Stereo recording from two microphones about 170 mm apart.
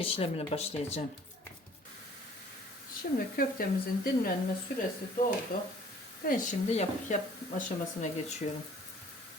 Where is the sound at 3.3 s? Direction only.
60° left (ahead or behind).